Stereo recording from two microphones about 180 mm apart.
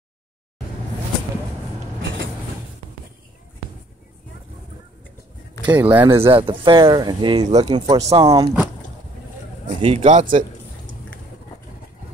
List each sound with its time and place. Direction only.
5.8 s speech: 10° right (ahead or behind)
6.1 s speech: 30° right (ahead or behind)
9.7 s speech: 35° right (ahead or behind)